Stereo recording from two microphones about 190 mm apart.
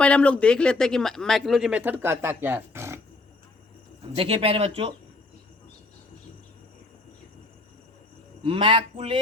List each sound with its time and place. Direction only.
0.0 s speech: 5° left (ahead or behind); by 3.0 s 15° right (ahead or behind)
4.1 s speech: 30° right (ahead or behind)
8.4 s speech: 25° right (ahead or behind)